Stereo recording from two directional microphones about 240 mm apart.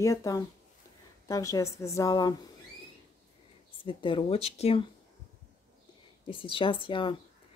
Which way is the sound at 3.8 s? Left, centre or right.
Left.